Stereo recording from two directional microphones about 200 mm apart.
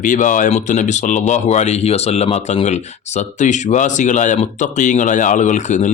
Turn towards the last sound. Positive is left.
turn(degrees=35)  # may be behind; listen again after turning